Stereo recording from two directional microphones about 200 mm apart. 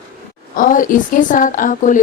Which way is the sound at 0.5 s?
40° left (ahead or behind).